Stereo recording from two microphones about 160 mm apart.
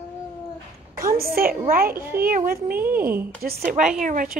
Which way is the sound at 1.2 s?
70° right (ahead or behind).